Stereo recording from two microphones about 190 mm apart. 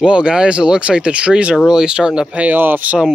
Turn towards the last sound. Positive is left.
turn(degrees=-5)  # may be behind; listen again after turning